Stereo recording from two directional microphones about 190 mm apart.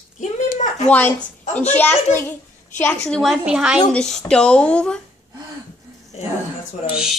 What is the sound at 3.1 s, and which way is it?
A woman's voice, centre (ahead or behind).